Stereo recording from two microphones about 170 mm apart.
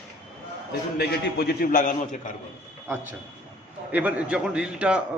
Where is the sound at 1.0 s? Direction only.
65° left (ahead or behind).